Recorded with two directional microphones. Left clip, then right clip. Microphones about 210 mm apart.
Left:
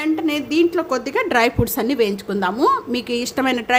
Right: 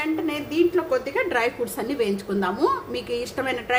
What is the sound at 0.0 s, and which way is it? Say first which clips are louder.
A woman's voice: left 5 dB; 50° left (ahead or behind).